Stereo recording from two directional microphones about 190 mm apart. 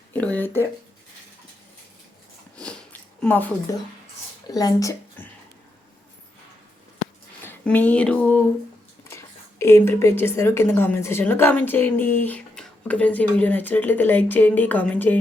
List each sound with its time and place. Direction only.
0.1 s speech: 10° left (ahead or behind)
2.6 s sniff: 5° left (ahead or behind)
4.5 s speech: 20° left (ahead or behind)
7.4 s speech: 10° left (ahead or behind)